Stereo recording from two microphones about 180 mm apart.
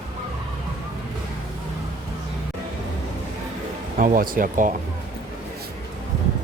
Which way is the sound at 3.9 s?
50° right (ahead or behind).